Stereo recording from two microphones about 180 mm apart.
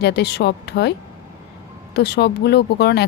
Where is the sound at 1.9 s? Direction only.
65° left (ahead or behind).